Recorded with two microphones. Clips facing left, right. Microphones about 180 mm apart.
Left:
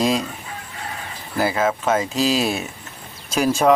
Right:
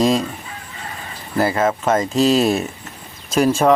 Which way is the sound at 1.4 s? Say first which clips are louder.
Right 2 dB; 5° left (ahead or behind).